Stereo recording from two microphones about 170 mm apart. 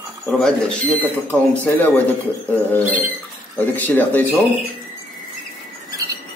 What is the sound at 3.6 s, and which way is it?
Speech, 10° left (ahead or behind).